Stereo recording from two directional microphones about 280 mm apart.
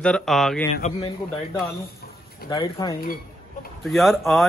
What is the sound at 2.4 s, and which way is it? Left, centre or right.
Speech, centre.